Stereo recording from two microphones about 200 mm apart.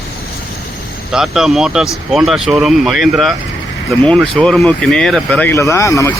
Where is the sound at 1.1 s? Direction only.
Centre (ahead or behind).